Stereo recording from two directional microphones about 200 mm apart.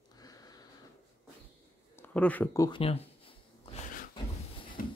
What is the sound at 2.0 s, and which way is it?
Speech, 10° left (ahead or behind).